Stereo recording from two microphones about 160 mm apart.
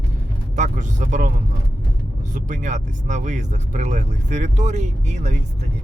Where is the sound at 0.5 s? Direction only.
50° right (ahead or behind).